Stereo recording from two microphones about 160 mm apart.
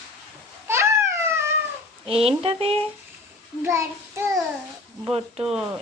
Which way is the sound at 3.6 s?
15° right (ahead or behind).